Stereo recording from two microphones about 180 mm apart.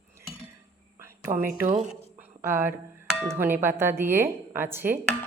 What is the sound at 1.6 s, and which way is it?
Speech, 50° right (ahead or behind).